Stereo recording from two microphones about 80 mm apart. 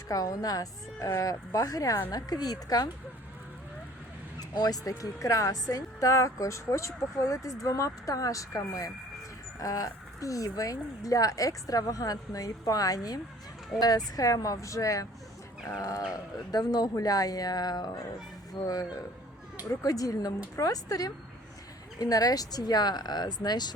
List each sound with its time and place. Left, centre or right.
0.1 s a woman's voice: left
4.4 s a woman's voice: left